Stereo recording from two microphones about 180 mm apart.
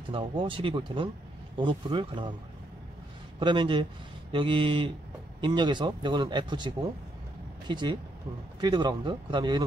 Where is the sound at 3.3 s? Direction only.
25° right (ahead or behind).